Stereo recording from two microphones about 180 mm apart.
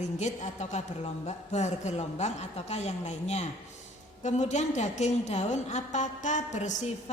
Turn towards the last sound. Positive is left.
turn(degrees=40)  # may be behind; listen again after turning